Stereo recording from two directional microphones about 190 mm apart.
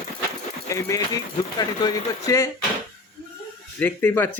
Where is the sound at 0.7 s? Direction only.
15° left (ahead or behind).